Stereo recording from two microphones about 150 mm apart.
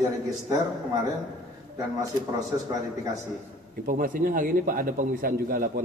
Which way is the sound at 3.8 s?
65° right (ahead or behind).